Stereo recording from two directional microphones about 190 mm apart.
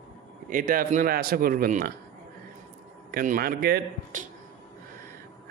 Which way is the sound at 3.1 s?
50° right (ahead or behind).